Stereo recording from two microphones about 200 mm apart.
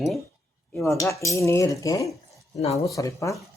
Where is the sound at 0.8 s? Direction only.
15° left (ahead or behind).